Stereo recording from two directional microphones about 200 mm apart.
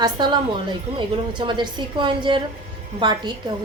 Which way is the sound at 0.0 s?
20° right (ahead or behind).